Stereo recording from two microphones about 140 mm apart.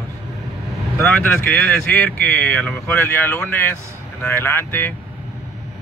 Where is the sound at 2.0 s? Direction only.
10° left (ahead or behind).